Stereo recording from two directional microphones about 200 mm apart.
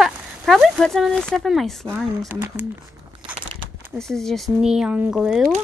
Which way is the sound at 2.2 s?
15° right (ahead or behind).